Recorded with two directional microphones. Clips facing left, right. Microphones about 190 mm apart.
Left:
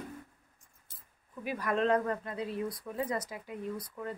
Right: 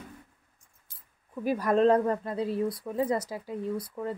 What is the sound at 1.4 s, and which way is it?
Speech, 35° right (ahead or behind).